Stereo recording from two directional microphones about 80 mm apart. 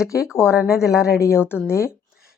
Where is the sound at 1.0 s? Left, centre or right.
Left.